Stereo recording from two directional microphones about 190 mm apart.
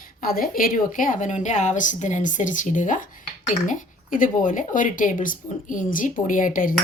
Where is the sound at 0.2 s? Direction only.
50° left (ahead or behind).